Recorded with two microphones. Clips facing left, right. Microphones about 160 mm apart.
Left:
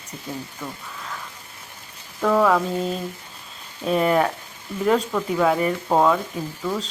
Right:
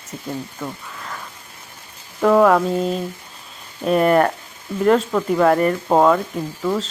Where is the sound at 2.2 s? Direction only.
5° right (ahead or behind).